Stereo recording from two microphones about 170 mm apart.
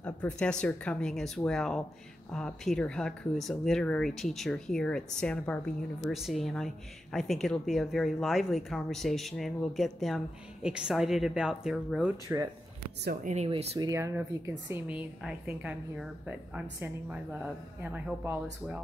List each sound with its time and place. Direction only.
0.0 s speech: 5° left (ahead or behind)
12.3 s a woman's voice: 15° right (ahead or behind)
13.0 s speech: 60° right (ahead or behind)
13.3 s speech: 40° right (ahead or behind)
13.7 s a woman's voice: 20° right (ahead or behind)